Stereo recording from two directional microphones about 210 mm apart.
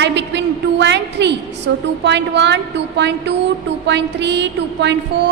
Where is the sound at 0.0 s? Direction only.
55° right (ahead or behind).